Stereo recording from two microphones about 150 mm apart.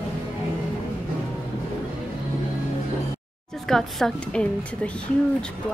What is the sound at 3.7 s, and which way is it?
Speech, centre (ahead or behind).